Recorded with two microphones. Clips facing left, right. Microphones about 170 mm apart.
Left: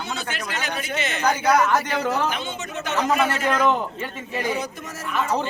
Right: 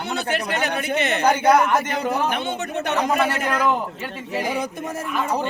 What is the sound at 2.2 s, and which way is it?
Speech, 60° right (ahead or behind).